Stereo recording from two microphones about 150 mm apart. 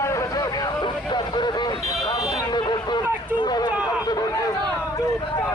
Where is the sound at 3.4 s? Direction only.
30° left (ahead or behind).